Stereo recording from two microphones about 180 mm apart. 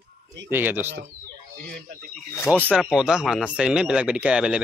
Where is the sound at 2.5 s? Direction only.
10° right (ahead or behind).